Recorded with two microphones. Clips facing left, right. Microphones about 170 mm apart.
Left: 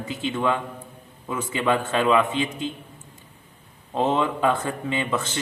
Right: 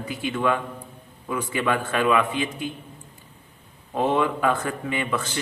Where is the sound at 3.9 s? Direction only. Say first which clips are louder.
Even; 25° left (ahead or behind).